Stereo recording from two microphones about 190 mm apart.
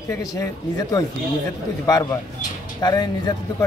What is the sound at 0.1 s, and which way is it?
A man's voice, 20° left (ahead or behind).